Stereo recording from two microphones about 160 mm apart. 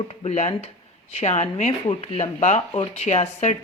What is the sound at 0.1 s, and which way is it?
Speech, 40° left (ahead or behind).